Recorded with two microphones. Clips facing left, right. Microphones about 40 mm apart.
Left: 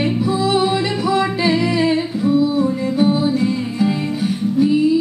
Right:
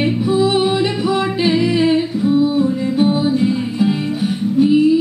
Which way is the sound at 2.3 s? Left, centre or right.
Right.